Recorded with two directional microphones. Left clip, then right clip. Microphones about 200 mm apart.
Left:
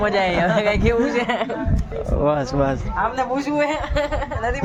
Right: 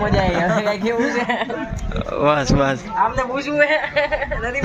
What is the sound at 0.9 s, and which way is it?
Speech, 20° left (ahead or behind).